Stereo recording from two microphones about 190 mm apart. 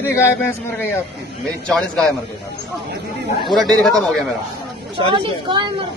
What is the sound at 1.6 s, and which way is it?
Speech, 5° left (ahead or behind).